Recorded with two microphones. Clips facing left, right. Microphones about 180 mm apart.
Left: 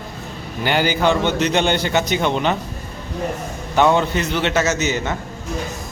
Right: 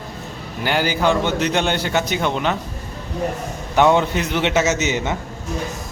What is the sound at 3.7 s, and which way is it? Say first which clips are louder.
A man's voice: even; 15° right (ahead or behind).